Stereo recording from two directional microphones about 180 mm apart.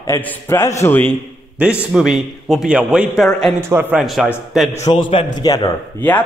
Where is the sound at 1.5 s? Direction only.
5° right (ahead or behind).